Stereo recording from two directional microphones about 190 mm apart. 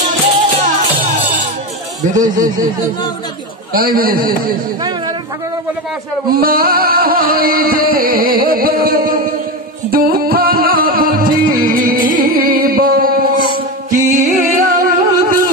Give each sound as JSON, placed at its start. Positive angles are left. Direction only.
{"t": 2.1, "sound": "music", "side_deg": -45}
{"t": 3.7, "sound": "music", "side_deg": -50}
{"t": 6.3, "sound": "music", "side_deg": -50}